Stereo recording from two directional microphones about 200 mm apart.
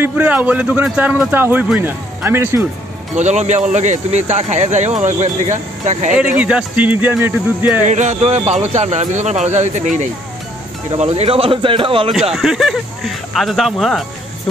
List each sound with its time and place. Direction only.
0.0 s a man's voice: 10° right (ahead or behind)
3.2 s speech: 35° right (ahead or behind)
6.1 s a man's voice: 5° right (ahead or behind)
7.8 s speech: 35° right (ahead or behind)
12.1 s speech: centre (ahead or behind)